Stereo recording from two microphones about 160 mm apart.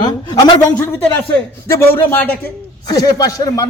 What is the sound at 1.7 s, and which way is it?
A man's voice, 15° left (ahead or behind).